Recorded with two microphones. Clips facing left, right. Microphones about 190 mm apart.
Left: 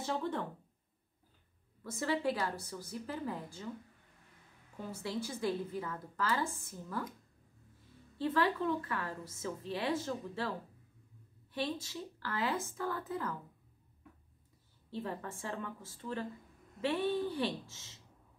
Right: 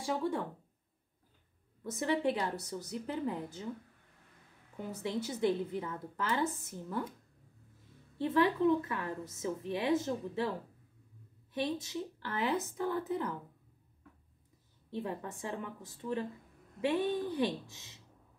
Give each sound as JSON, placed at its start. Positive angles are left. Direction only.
{"t": 0.0, "sound": "a woman's voice", "side_deg": -10}
{"t": 1.8, "sound": "a woman's voice", "side_deg": -20}
{"t": 4.7, "sound": "a woman's voice", "side_deg": -20}
{"t": 8.2, "sound": "a woman's voice", "side_deg": -20}
{"t": 11.5, "sound": "a woman's voice", "side_deg": -20}
{"t": 14.9, "sound": "a woman's voice", "side_deg": -20}